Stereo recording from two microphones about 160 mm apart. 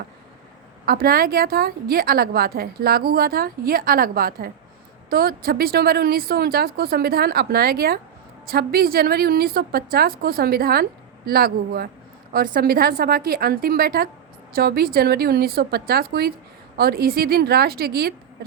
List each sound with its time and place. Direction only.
0.9 s a woman's voice: 70° right (ahead or behind)